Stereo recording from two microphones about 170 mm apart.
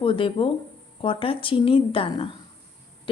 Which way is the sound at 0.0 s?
30° left (ahead or behind).